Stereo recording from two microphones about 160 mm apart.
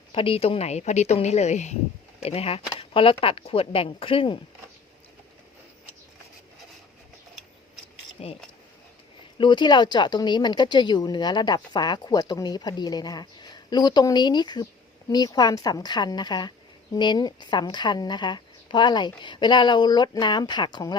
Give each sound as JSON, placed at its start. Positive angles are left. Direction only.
{"t": 0.1, "sound": "a woman's voice", "side_deg": 35}
{"t": 8.2, "sound": "speech", "side_deg": 40}
{"t": 9.4, "sound": "speech", "side_deg": 30}